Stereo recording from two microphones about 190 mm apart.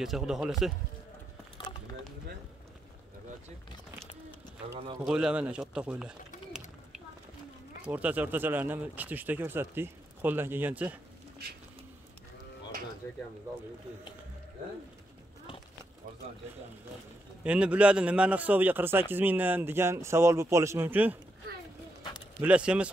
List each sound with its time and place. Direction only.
0.0 s speech: centre (ahead or behind)
1.6 s a sound: 25° left (ahead or behind)
5.0 s speech: 5° right (ahead or behind)
7.8 s a man's voice: 10° right (ahead or behind)
13.0 s speech: 15° left (ahead or behind)
17.4 s a man's voice: 5° right (ahead or behind)
22.4 s speech: 5° right (ahead or behind)